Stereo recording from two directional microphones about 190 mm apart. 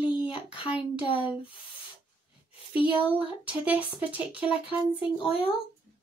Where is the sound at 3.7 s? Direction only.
5° right (ahead or behind).